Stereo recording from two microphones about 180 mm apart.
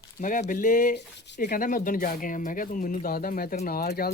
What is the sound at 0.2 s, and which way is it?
Speech, 45° left (ahead or behind).